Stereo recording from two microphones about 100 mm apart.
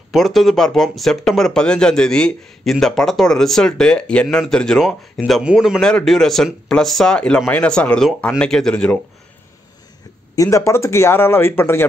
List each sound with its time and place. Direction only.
0.1 s speech: centre (ahead or behind)
10.3 s a man's voice: 35° left (ahead or behind)